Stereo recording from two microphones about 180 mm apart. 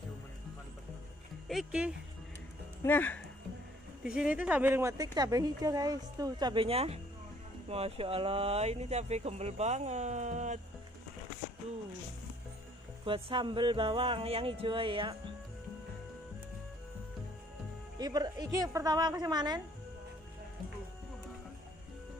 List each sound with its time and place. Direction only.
1.5 s speech: 5° right (ahead or behind)
2.8 s speech: 10° left (ahead or behind)
4.0 s a woman's voice: 5° right (ahead or behind); by 10.6 s 40° right (ahead or behind)
13.0 s a woman's voice: 30° right (ahead or behind)
17.9 s a woman's voice: 20° right (ahead or behind)